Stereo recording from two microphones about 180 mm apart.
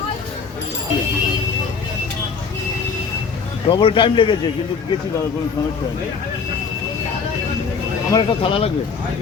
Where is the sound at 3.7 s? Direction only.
30° left (ahead or behind).